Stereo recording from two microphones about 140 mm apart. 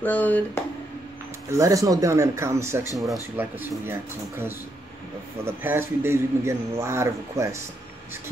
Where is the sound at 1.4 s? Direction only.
20° right (ahead or behind).